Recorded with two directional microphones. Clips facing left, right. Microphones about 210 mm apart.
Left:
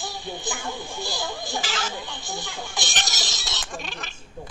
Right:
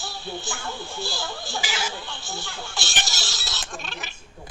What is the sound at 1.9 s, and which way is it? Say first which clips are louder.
Speech: left 2 dB; 15° left (ahead or behind).